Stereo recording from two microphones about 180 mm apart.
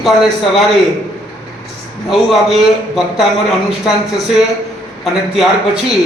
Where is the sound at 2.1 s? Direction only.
Centre (ahead or behind).